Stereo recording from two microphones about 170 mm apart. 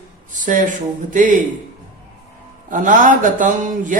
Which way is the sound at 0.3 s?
50° right (ahead or behind).